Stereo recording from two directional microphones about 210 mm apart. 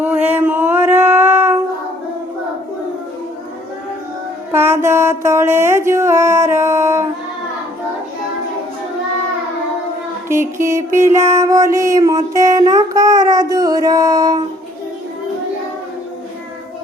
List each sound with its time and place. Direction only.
0.0 s a sound: 10° right (ahead or behind)
4.5 s mantra: 10° right (ahead or behind)
10.2 s mantra: 10° right (ahead or behind)